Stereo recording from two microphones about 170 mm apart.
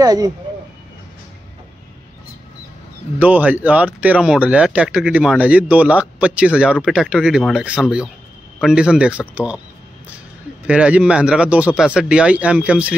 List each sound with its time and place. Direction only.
0.0 s speech: 20° right (ahead or behind)
3.2 s speech: 10° right (ahead or behind)
10.7 s speech: 5° right (ahead or behind)